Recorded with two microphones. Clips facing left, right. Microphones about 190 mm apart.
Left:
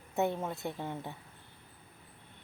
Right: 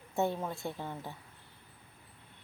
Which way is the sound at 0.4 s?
20° left (ahead or behind).